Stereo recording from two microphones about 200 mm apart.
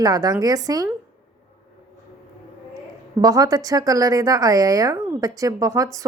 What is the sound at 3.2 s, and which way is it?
A woman's voice, 15° right (ahead or behind).